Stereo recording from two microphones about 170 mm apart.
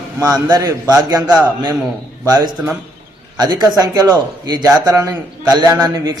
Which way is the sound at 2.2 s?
25° right (ahead or behind).